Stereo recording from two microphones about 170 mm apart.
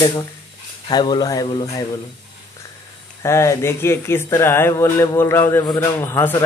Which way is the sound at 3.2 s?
15° left (ahead or behind).